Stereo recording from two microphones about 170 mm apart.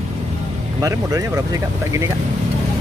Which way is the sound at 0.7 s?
20° right (ahead or behind).